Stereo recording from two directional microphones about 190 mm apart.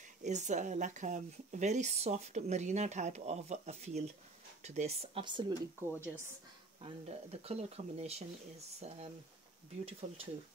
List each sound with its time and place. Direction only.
0.2 s a woman's voice: 40° right (ahead or behind)
5.8 s speech: 10° right (ahead or behind)
6.8 s a woman's voice: 35° right (ahead or behind)